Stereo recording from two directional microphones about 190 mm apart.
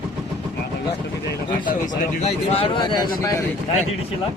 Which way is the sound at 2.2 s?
30° left (ahead or behind).